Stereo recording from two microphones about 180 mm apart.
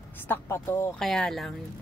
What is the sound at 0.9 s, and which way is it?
Speech, 5° left (ahead or behind).